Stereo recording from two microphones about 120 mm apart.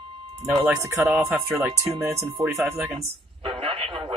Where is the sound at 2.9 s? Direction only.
55° right (ahead or behind).